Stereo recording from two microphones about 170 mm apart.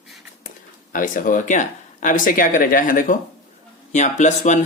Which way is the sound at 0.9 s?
50° left (ahead or behind).